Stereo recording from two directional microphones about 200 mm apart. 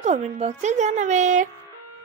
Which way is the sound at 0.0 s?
35° right (ahead or behind).